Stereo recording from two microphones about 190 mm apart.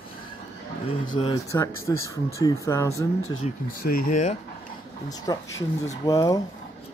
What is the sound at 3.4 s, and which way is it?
Speech, 35° left (ahead or behind).